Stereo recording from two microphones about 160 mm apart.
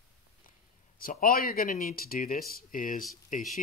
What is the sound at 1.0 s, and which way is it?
Speech, 65° left (ahead or behind).